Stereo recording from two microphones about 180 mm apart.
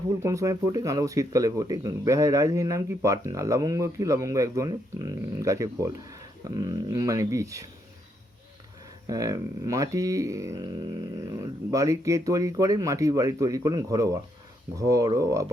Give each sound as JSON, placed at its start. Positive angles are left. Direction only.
{"t": 0.2, "sound": "speech", "side_deg": -15}
{"t": 9.0, "sound": "speech", "side_deg": -20}